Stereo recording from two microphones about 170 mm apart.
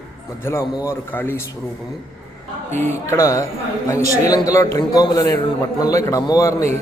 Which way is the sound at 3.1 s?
20° left (ahead or behind).